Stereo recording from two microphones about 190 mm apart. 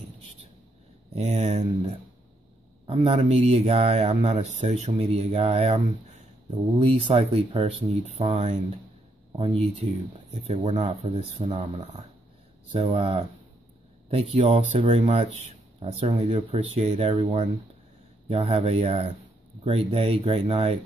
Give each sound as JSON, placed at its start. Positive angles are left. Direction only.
{"t": 1.1, "sound": "speech", "side_deg": -35}